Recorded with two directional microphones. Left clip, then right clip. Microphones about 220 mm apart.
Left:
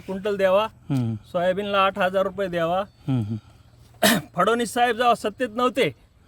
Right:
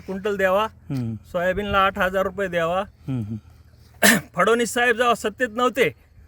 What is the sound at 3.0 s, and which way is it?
Speech, 10° left (ahead or behind).